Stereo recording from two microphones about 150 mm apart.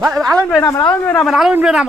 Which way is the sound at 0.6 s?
25° left (ahead or behind).